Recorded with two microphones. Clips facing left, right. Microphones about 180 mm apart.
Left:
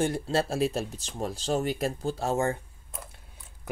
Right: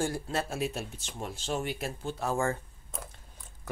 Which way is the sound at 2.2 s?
20° left (ahead or behind).